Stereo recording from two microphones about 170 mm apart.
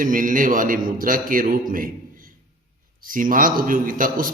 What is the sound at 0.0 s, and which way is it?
A man's voice, 50° right (ahead or behind).